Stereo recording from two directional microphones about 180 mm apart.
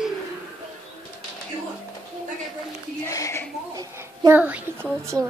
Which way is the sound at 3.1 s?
15° left (ahead or behind).